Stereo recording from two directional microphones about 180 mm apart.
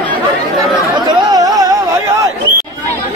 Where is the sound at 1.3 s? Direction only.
20° right (ahead or behind).